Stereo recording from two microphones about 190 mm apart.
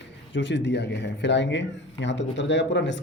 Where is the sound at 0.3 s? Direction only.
70° left (ahead or behind).